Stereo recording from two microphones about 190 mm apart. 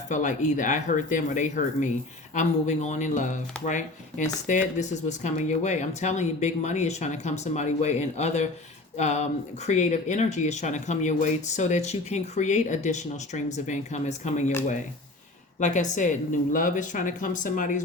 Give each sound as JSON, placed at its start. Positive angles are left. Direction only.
{"t": 0.1, "sound": "speech", "side_deg": 40}
{"t": 15.6, "sound": "speech", "side_deg": 40}